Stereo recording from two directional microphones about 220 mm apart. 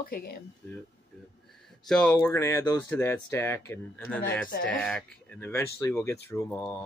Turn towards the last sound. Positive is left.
turn(degrees=5)  # may be behind; listen again after turning